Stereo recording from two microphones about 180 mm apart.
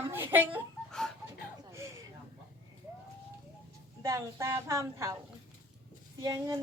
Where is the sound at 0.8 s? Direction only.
5° left (ahead or behind).